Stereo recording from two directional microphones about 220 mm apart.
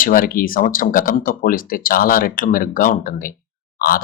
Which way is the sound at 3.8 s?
40° left (ahead or behind).